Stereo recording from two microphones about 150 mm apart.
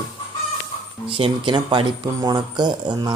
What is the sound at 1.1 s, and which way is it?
Speech, 35° right (ahead or behind).